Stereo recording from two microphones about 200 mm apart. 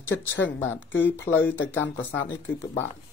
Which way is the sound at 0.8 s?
70° left (ahead or behind).